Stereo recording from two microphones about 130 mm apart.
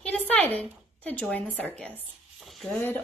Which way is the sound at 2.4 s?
Centre (ahead or behind).